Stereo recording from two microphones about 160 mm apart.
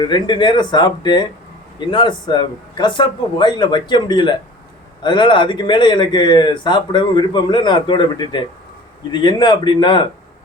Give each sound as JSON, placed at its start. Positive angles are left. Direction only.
{"t": 0.0, "sound": "speech", "side_deg": 30}